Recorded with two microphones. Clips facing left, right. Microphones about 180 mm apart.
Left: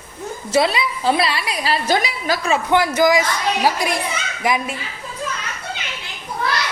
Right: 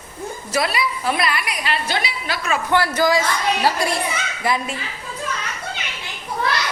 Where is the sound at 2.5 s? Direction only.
20° left (ahead or behind).